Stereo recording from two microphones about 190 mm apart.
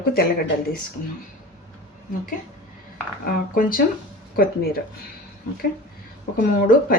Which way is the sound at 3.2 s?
50° left (ahead or behind).